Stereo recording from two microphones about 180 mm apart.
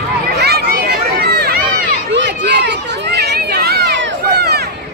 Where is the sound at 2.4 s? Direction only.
70° right (ahead or behind).